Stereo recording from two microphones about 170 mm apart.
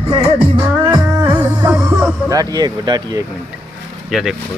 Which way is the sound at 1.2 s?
15° right (ahead or behind).